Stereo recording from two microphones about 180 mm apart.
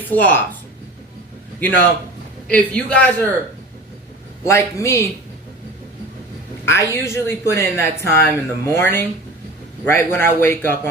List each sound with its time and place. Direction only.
0.1 s speech: 10° left (ahead or behind)
1.5 s speech: 10° left (ahead or behind)
4.4 s speech: 15° left (ahead or behind)
6.7 s speech: 15° left (ahead or behind)